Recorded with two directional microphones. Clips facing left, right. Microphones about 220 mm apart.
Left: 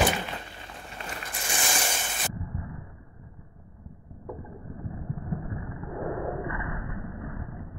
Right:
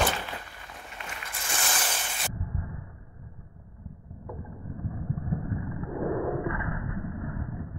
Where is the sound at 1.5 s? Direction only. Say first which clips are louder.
Left 2 dB; 10° left (ahead or behind).